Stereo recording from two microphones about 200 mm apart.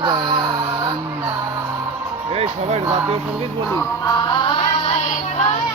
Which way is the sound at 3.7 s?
20° left (ahead or behind).